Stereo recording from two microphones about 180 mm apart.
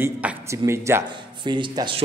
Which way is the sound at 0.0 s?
10° right (ahead or behind).